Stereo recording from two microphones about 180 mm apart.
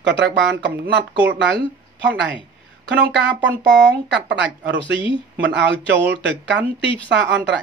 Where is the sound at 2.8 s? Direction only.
75° right (ahead or behind).